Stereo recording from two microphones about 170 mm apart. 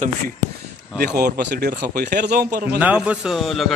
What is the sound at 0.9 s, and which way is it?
A man's voice, 65° right (ahead or behind).